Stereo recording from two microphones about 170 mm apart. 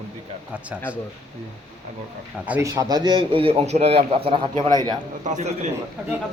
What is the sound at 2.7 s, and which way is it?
A man's voice, 20° right (ahead or behind).